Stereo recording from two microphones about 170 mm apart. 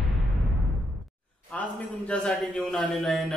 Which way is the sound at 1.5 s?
10° left (ahead or behind).